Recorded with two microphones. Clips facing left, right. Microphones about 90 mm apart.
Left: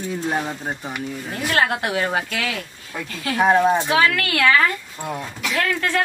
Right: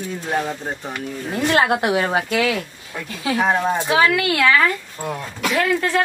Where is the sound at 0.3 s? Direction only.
5° left (ahead or behind).